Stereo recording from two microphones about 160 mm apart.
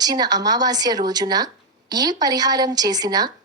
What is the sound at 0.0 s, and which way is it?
A woman's voice, 25° right (ahead or behind).